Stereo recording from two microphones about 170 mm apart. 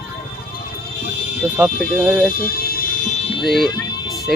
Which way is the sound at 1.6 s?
10° right (ahead or behind).